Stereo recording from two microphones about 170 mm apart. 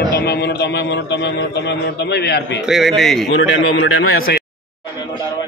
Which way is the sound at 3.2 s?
90° left.